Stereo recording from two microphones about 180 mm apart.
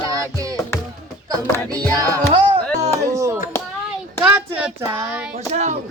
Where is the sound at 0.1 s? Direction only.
20° right (ahead or behind).